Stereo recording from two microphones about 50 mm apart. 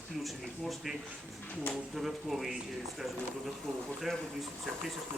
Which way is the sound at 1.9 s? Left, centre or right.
Centre.